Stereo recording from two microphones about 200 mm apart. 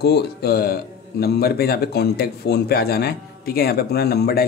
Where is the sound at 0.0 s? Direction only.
50° left (ahead or behind).